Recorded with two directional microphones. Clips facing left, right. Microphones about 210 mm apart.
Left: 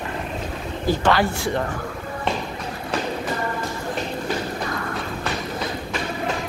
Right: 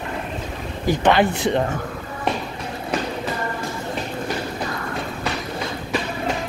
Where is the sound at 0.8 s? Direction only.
20° right (ahead or behind).